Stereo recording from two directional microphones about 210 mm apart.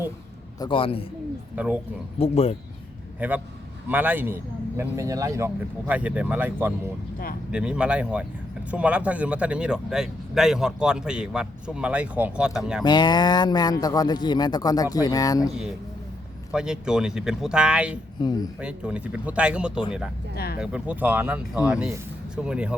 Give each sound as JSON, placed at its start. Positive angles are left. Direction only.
{"t": 0.6, "sound": "speech", "side_deg": 25}
{"t": 1.5, "sound": "speech", "side_deg": -5}
{"t": 2.1, "sound": "speech", "side_deg": 30}
{"t": 3.2, "sound": "a man's voice", "side_deg": -10}
{"t": 12.8, "sound": "speech", "side_deg": 20}
{"t": 16.5, "sound": "speech", "side_deg": -5}
{"t": 18.2, "sound": "speech", "side_deg": 20}
{"t": 18.6, "sound": "speech", "side_deg": -5}
{"t": 20.3, "sound": "speech", "side_deg": 50}
{"t": 20.6, "sound": "speech", "side_deg": -5}